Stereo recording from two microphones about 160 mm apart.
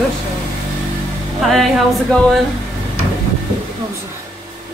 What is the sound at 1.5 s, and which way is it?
Speech, centre (ahead or behind).